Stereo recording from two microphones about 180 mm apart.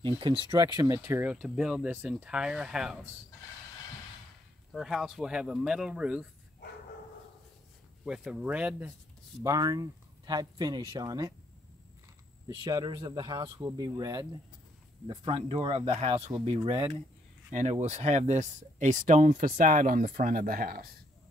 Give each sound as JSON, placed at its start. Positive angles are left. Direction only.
{"t": 0.0, "sound": "speech", "side_deg": -30}
{"t": 4.7, "sound": "speech", "side_deg": 0}
{"t": 8.0, "sound": "speech", "side_deg": -5}
{"t": 9.4, "sound": "speech", "side_deg": -20}
{"t": 12.4, "sound": "speech", "side_deg": -20}
{"t": 17.5, "sound": "speech", "side_deg": -40}